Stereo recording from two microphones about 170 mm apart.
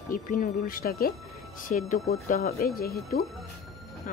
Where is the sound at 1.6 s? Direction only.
50° left (ahead or behind).